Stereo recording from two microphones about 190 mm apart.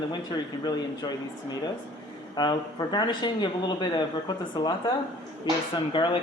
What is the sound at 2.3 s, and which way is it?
Speech, 20° left (ahead or behind).